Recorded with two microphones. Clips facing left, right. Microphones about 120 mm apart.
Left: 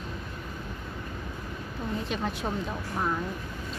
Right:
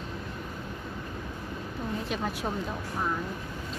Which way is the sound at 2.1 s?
Centre (ahead or behind).